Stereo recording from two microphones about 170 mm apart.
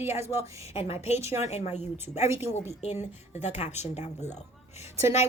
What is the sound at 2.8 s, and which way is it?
Speech, 40° left (ahead or behind).